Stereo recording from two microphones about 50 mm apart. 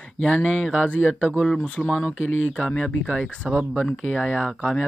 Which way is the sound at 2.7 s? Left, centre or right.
Centre.